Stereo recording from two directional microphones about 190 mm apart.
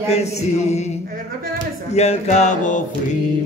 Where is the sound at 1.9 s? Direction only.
35° left (ahead or behind).